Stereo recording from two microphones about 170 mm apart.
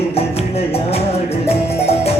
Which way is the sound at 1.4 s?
35° left (ahead or behind).